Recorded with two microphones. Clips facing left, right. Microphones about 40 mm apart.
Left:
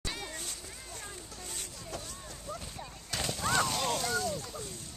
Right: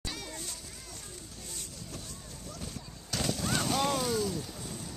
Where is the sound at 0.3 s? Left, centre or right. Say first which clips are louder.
Even; left.